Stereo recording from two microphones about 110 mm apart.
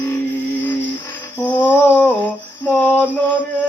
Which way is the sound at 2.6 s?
15° left (ahead or behind).